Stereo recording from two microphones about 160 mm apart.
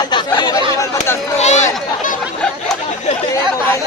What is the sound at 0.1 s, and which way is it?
Chatter, 30° left (ahead or behind).